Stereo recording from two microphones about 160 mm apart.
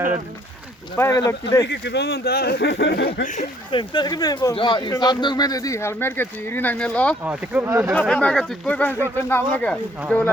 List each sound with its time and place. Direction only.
0.9 s speech: 15° left (ahead or behind)
1.6 s speech: 90° left
3.7 s speech: 30° left (ahead or behind); by 7.2 s 10° left (ahead or behind)
7.3 s speech: 15° right (ahead or behind)
7.9 s speech: 10° left (ahead or behind)